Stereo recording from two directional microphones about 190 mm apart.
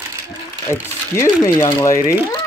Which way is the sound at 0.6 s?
15° left (ahead or behind).